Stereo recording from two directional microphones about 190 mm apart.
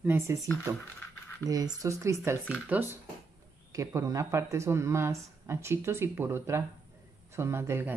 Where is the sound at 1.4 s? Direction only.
20° right (ahead or behind).